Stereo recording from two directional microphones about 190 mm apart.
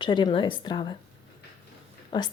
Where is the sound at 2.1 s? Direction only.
25° left (ahead or behind).